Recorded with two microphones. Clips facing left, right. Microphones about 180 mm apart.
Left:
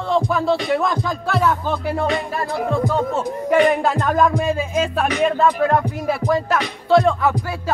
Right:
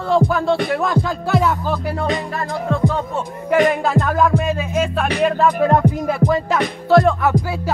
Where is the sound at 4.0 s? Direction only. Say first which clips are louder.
Right 3 dB; 45° right (ahead or behind).